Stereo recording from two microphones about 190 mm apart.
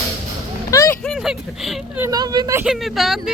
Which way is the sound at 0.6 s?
15° left (ahead or behind).